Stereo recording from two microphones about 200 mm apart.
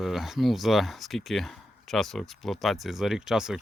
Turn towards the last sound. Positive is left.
turn(degrees=0)  # may be behind; listen again after turning